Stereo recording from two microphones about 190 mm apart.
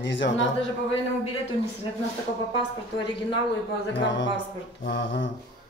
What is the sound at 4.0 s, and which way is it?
A man's voice, 75° left (ahead or behind).